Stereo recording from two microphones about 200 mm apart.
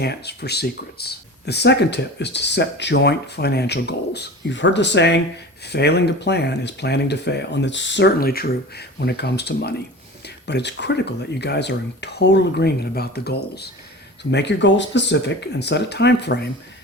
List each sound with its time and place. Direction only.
0.0 s speech: 55° left (ahead or behind)